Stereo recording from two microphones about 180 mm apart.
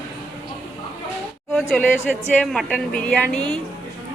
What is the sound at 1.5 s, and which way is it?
A woman's voice, 5° left (ahead or behind).